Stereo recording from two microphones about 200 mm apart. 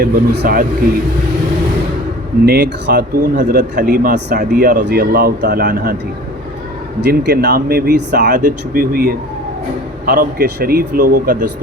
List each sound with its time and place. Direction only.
0.0 s speech: 45° right (ahead or behind)
2.4 s speech: 55° right (ahead or behind)
3.3 s speech: 40° right (ahead or behind)
7.0 s speech: 55° right (ahead or behind)